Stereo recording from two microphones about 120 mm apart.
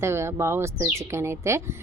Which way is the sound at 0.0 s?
20° right (ahead or behind).